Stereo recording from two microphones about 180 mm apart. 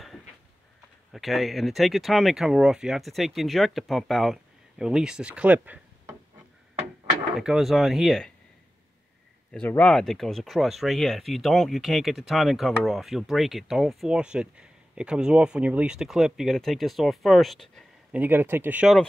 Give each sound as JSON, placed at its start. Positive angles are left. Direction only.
{"t": 1.1, "sound": "speech", "side_deg": 0}
{"t": 7.3, "sound": "speech", "side_deg": 0}
{"t": 9.5, "sound": "speech", "side_deg": 10}
{"t": 18.2, "sound": "speech", "side_deg": -10}